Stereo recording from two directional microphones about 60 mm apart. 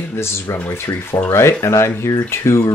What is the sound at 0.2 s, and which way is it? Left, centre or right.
Speech, left.